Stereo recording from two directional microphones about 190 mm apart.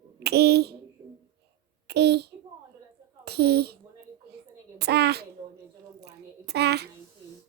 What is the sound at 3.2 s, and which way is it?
Speech, 60° right (ahead or behind).